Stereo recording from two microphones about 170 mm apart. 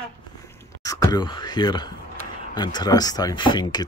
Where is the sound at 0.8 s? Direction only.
20° left (ahead or behind).